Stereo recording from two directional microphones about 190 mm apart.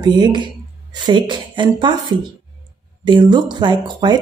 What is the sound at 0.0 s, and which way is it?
Speech, 20° right (ahead or behind).